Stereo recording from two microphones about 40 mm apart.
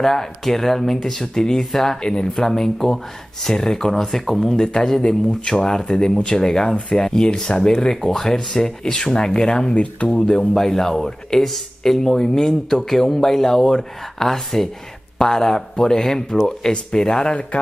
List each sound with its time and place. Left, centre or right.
0.0 s speech: centre
9.8 s speech: left
10.5 s speech: centre